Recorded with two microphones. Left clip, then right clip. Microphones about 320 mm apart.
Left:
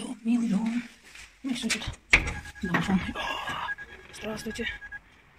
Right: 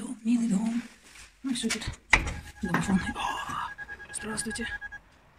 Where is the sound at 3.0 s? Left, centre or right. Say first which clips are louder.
Right 1 dB; centre.